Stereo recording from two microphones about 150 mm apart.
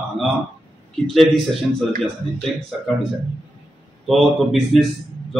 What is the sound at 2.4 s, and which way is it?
Speech, 5° left (ahead or behind).